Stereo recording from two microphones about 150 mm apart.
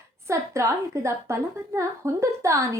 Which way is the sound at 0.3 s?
20° right (ahead or behind).